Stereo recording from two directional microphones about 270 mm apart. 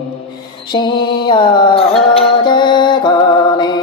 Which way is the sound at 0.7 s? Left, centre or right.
Centre.